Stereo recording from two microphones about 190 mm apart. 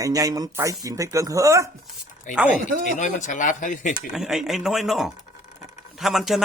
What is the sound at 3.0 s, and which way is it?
Speech, 40° left (ahead or behind).